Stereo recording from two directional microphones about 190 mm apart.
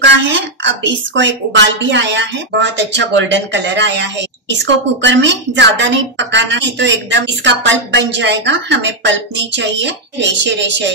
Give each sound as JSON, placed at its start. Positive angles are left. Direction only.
{"t": 0.3, "sound": "a woman's voice", "side_deg": -70}